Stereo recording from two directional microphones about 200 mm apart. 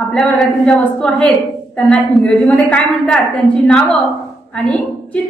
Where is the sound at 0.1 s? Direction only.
5° left (ahead or behind).